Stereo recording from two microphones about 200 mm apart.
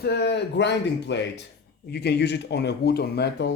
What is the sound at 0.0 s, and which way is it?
Speech, 55° left (ahead or behind).